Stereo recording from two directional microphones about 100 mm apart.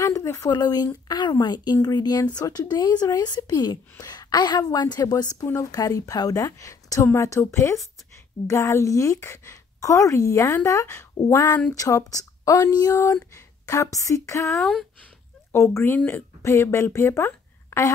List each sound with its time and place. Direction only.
0.0 s a sound: 30° left (ahead or behind)
0.5 s a woman's voice: 40° left (ahead or behind); by 11.6 s 25° left (ahead or behind)
12.1 s a woman's voice: 35° left (ahead or behind)
14.6 s speech: 5° left (ahead or behind)
15.5 s a woman's voice: 30° left (ahead or behind)